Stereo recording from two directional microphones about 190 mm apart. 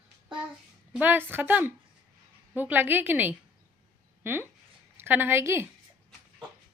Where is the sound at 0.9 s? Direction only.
10° right (ahead or behind).